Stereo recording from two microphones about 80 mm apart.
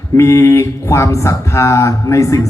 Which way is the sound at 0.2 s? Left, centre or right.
Left.